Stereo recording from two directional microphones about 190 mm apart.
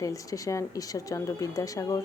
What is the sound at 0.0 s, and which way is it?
Speech, 15° left (ahead or behind).